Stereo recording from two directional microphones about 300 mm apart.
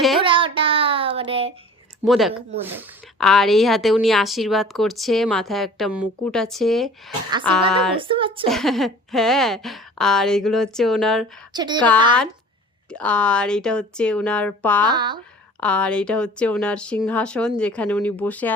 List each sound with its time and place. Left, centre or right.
0.2 s a sound: centre
2.0 s a woman's voice: centre
7.1 s speech: centre
7.7 s a woman's voice: centre
7.9 s speech: centre
8.4 s a woman's voice: centre
11.5 s speech: centre
12.9 s a woman's voice: centre
14.8 s speech: centre
15.6 s a woman's voice: centre